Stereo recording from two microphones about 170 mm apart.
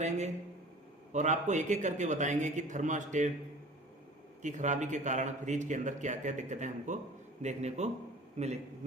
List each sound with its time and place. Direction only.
1.1 s speech: 45° right (ahead or behind)
4.4 s a man's voice: 45° right (ahead or behind)